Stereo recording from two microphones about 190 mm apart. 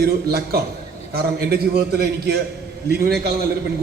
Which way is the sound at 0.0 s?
55° right (ahead or behind).